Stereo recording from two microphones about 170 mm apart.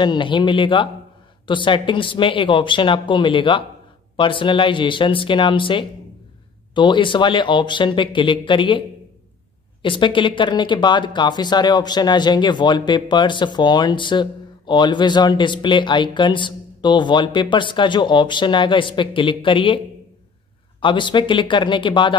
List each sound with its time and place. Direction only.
0.0 s speech: 30° left (ahead or behind)
20.8 s speech: 30° left (ahead or behind)